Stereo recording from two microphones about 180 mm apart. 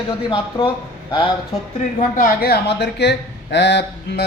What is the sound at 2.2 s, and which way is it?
A man's voice, 60° left (ahead or behind).